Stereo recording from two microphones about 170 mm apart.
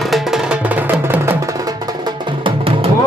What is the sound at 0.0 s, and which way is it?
Music, centre (ahead or behind).